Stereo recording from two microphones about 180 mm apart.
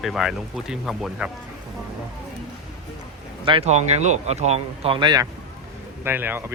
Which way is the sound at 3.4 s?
30° right (ahead or behind).